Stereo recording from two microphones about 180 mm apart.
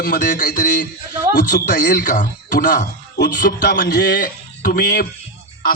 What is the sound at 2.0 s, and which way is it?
Speech, 45° left (ahead or behind).